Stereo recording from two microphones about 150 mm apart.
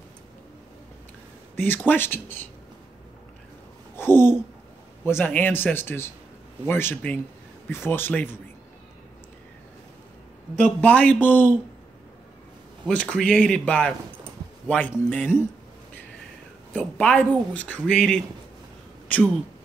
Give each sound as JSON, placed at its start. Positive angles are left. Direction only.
{"t": 1.6, "sound": "speech", "side_deg": 15}
{"t": 3.9, "sound": "a sound", "side_deg": 15}
{"t": 5.0, "sound": "speech", "side_deg": 15}
{"t": 10.8, "sound": "speech", "side_deg": 10}
{"t": 12.8, "sound": "speech", "side_deg": 5}
{"t": 16.7, "sound": "speech", "side_deg": 10}